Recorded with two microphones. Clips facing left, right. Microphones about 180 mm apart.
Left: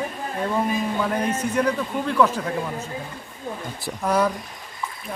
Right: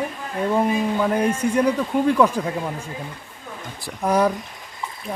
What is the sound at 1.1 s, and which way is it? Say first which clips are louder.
A man's voice: right 3 dB; 10° right (ahead or behind).